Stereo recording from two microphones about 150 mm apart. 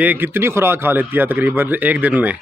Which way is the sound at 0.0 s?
10° right (ahead or behind).